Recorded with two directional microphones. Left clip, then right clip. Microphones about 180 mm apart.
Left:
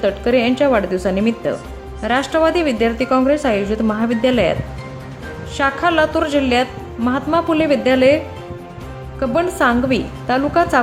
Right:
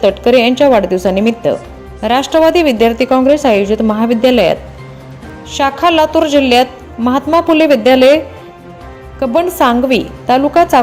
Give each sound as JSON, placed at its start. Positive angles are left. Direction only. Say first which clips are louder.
{"t": 0.0, "sound": "a woman's voice", "louder": "right 7 dB", "side_deg": -20}
{"t": 5.5, "sound": "a woman's voice", "louder": "right 5 dB", "side_deg": -20}
{"t": 9.2, "sound": "a woman's voice", "louder": "right 5 dB", "side_deg": -20}